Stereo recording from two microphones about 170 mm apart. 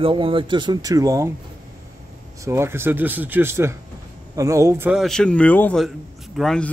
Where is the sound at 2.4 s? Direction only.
15° right (ahead or behind).